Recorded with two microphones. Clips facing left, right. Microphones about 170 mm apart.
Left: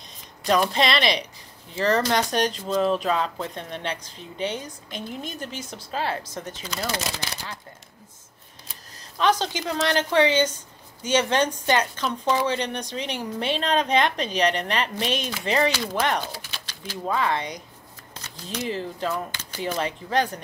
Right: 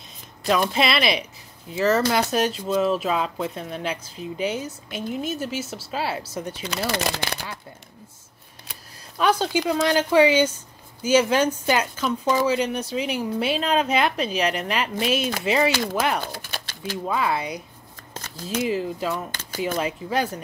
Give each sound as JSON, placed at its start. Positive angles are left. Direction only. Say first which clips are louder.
{"t": 0.5, "sound": "a woman's voice", "louder": "even", "side_deg": -5}
{"t": 6.9, "sound": "speech", "louder": "right 6 dB", "side_deg": -60}
{"t": 9.2, "sound": "a woman's voice", "louder": "right 2 dB", "side_deg": -10}
{"t": 16.3, "sound": "bird", "louder": "right 3 dB", "side_deg": -50}
{"t": 17.1, "sound": "a woman's voice", "louder": "even", "side_deg": -10}
{"t": 18.7, "sound": "a woman's voice", "louder": "left 1 dB", "side_deg": -10}